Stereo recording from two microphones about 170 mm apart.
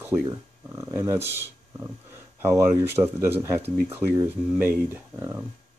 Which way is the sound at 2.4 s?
15° right (ahead or behind).